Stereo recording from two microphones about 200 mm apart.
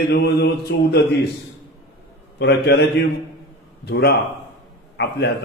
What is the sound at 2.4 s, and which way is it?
Speech, 60° left (ahead or behind).